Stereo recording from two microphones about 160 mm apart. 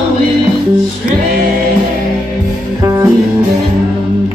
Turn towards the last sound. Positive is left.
turn(degrees=-20)  # may be behind; listen again after turning